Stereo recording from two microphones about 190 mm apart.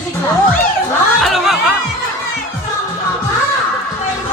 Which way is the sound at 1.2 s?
Centre (ahead or behind).